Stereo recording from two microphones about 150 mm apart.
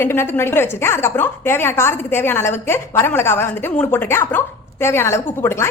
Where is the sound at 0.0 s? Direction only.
15° left (ahead or behind).